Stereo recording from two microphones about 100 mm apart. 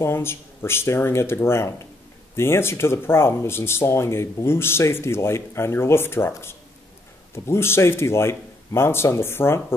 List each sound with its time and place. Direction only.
0.0 s speech: 25° left (ahead or behind)